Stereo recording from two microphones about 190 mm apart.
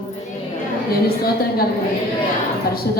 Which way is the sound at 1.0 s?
55° left (ahead or behind).